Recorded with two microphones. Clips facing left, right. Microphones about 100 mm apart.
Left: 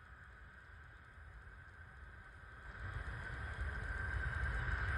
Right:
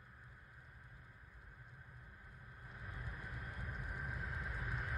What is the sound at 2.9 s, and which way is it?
Vehicle, 25° left (ahead or behind).